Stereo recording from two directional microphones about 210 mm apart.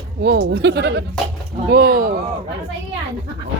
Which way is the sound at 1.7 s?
45° right (ahead or behind).